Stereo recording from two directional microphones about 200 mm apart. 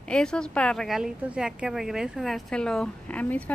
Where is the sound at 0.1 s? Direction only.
5° left (ahead or behind).